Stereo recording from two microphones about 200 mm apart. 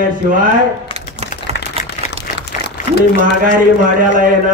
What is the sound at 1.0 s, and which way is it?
Typing, 30° right (ahead or behind).